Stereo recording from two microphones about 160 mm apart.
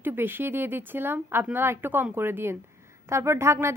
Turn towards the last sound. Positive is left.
turn(degrees=-15)  # may be behind; listen again after turning